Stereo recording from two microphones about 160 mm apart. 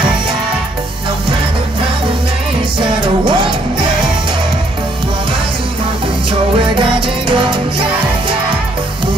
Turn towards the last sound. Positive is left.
turn(degrees=-30)  # may be behind; listen again after turning